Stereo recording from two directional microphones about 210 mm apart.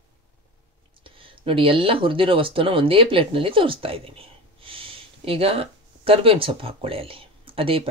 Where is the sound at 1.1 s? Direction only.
25° right (ahead or behind).